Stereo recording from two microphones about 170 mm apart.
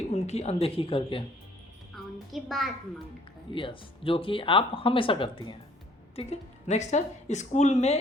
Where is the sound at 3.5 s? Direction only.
30° left (ahead or behind).